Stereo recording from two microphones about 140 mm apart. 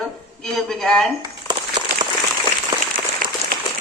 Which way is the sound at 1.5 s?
30° right (ahead or behind).